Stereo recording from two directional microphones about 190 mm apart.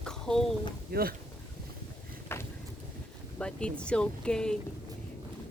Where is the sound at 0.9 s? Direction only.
55° right (ahead or behind).